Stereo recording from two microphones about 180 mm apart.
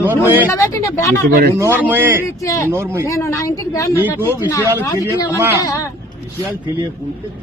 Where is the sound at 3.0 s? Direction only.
15° left (ahead or behind).